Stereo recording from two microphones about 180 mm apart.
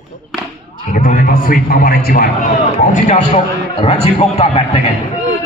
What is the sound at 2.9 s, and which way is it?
A man's voice, 40° left (ahead or behind).